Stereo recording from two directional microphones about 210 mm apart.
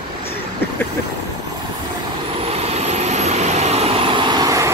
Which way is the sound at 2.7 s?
30° right (ahead or behind).